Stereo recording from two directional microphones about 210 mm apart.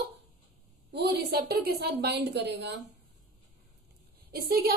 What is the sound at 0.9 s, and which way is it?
A woman's voice, 50° right (ahead or behind).